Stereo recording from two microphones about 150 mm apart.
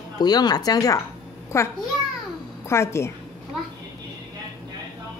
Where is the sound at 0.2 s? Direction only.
25° left (ahead or behind).